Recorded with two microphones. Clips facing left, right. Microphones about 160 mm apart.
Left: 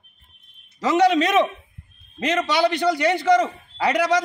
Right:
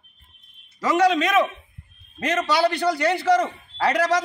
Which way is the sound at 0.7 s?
20° left (ahead or behind).